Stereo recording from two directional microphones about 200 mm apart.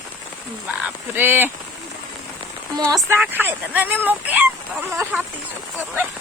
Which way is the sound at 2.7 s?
15° right (ahead or behind).